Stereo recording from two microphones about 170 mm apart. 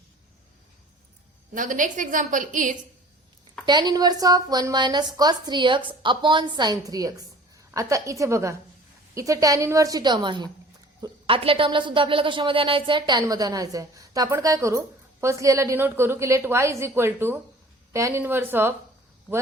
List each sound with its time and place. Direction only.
1.5 s a woman's voice: 50° right (ahead or behind)
3.7 s a woman's voice: 25° right (ahead or behind)